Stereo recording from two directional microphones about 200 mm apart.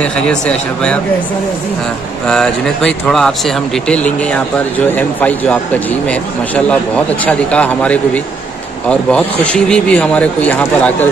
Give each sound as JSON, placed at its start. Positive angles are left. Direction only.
{"t": 0.0, "sound": "speech", "side_deg": 5}
{"t": 2.2, "sound": "speech", "side_deg": 5}